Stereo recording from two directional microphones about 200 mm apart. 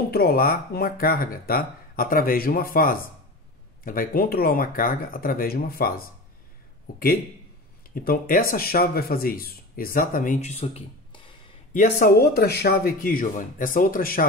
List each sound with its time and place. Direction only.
0.1 s speech: 50° left (ahead or behind)
7.9 s speech: 45° left (ahead or behind); by 11.3 s 25° left (ahead or behind)
11.7 s speech: 50° left (ahead or behind)